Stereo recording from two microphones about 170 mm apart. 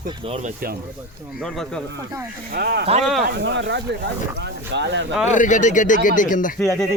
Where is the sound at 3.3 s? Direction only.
90° right.